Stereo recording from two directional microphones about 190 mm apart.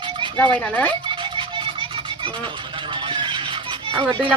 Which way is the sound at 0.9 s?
25° right (ahead or behind).